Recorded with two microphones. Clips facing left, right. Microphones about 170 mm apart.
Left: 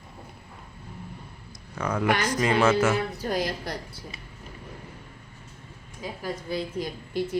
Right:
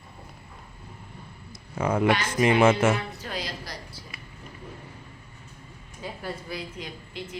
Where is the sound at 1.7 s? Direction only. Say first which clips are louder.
Right 2 dB; 25° right (ahead or behind).